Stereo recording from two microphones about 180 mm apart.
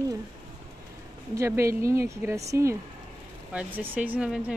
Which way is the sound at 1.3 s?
15° right (ahead or behind).